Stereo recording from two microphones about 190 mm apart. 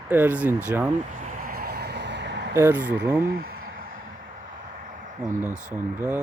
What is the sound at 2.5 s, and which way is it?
Speech, 10° right (ahead or behind).